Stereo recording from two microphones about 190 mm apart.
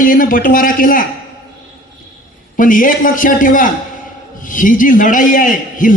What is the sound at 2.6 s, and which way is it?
A man's voice, 45° left (ahead or behind).